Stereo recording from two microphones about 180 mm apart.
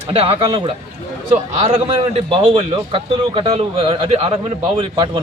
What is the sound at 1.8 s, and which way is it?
A man's voice, 30° right (ahead or behind).